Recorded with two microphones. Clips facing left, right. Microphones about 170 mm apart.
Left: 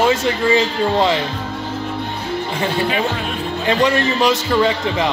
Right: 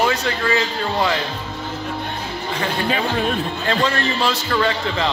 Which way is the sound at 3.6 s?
15° left (ahead or behind).